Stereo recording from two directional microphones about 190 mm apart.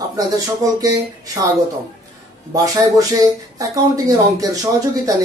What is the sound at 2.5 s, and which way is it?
Speech, 20° right (ahead or behind).